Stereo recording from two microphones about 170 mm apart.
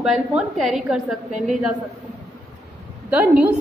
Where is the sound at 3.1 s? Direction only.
10° right (ahead or behind).